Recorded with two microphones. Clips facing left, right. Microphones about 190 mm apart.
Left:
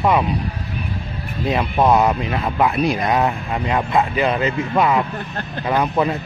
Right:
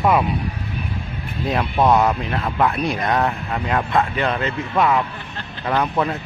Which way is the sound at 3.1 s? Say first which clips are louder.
Left 2 dB; 15° left (ahead or behind).